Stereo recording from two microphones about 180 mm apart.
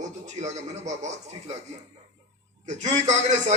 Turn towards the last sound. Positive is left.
turn(degrees=-40)  # may be behind; listen again after turning